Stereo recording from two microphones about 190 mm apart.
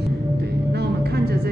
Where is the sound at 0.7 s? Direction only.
55° right (ahead or behind).